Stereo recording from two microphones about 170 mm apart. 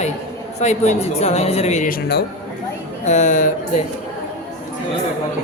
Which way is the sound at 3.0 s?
45° left (ahead or behind).